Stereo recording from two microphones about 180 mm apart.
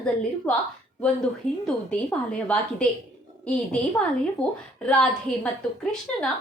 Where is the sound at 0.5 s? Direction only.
5° left (ahead or behind).